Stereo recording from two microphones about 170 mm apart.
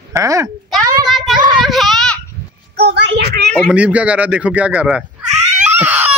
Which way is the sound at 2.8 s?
85° right.